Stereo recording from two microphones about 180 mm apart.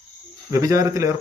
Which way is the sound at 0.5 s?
20° right (ahead or behind).